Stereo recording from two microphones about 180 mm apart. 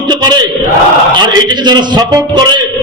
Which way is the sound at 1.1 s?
25° right (ahead or behind).